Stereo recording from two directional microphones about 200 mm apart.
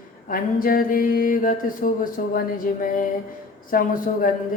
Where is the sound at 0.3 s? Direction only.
45° left (ahead or behind).